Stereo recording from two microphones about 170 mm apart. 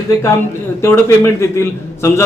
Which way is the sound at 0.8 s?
15° left (ahead or behind).